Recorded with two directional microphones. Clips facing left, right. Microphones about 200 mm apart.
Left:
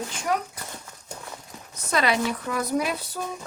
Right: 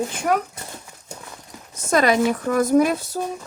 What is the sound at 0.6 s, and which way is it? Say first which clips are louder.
Horse: right 2 dB; 25° right (ahead or behind).